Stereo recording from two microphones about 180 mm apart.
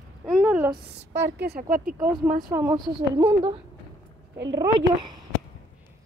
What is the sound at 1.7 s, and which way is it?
Speech, 50° right (ahead or behind).